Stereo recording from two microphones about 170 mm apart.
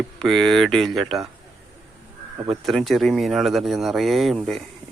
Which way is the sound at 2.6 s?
Centre (ahead or behind).